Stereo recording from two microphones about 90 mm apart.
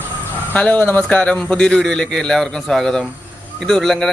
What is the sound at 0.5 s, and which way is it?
A man's voice, 15° left (ahead or behind).